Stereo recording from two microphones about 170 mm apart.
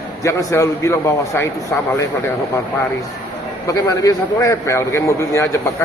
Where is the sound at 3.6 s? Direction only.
20° left (ahead or behind).